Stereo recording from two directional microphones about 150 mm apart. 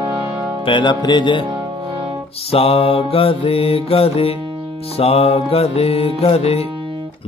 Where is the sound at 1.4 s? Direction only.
30° right (ahead or behind).